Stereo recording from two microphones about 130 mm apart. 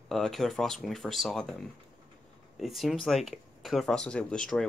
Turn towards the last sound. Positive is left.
turn(degrees=5)  # may be behind; listen again after turning